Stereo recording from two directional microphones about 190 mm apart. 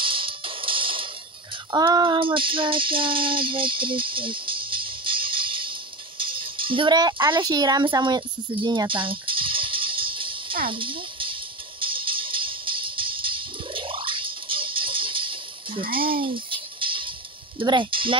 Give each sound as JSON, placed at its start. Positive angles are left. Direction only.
{"t": 0.0, "sound": "music", "side_deg": -25}
{"t": 10.7, "sound": "squeal", "side_deg": -25}
{"t": 11.8, "sound": "music", "side_deg": -25}
{"t": 16.0, "sound": "a sound", "side_deg": -25}
{"t": 17.6, "sound": "speech", "side_deg": -25}